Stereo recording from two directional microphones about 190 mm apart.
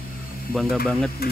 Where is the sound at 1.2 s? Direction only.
55° left (ahead or behind).